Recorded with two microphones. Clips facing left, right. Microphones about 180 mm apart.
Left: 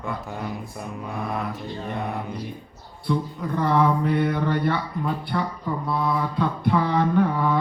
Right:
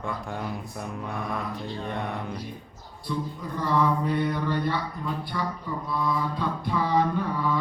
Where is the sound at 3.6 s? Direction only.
60° left (ahead or behind).